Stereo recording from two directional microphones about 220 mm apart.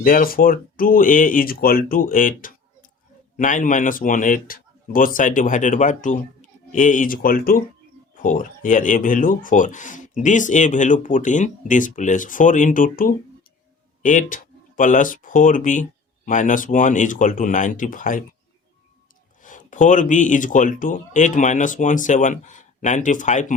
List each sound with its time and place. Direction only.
0.0 s speech: 40° left (ahead or behind)
19.4 s speech: 35° left (ahead or behind)